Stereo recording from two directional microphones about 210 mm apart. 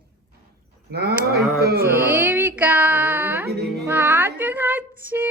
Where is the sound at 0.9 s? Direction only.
50° right (ahead or behind).